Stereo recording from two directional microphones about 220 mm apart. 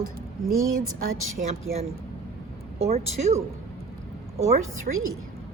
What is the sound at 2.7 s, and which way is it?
Speech, 30° right (ahead or behind).